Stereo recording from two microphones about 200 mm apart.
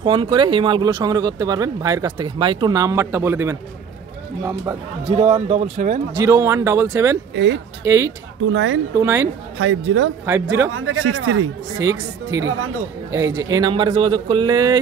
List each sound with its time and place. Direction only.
0.0 s speech: 25° right (ahead or behind)
5.0 s speech: 30° right (ahead or behind)
6.1 s speech: 15° right (ahead or behind)
8.5 s a man's voice: 70° right (ahead or behind)
8.9 s speech: 15° right (ahead or behind)
9.6 s a man's voice: 70° right (ahead or behind)
10.7 s speech: 90° right
11.8 s speech: 15° right (ahead or behind)